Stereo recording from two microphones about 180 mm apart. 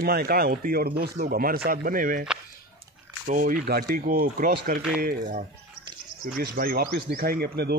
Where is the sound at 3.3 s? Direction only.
50° right (ahead or behind).